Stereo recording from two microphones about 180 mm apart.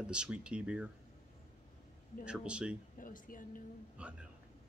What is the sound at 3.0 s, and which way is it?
Speech, 50° left (ahead or behind).